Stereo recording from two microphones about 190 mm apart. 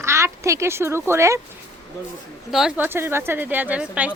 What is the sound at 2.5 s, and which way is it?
A woman's voice, 5° right (ahead or behind).